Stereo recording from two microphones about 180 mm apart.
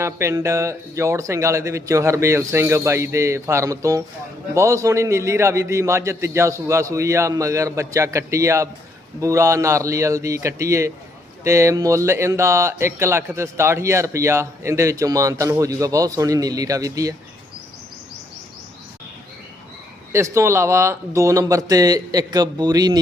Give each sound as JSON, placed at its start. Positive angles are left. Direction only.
{"t": 0.0, "sound": "speech", "side_deg": -15}
{"t": 20.1, "sound": "speech", "side_deg": -15}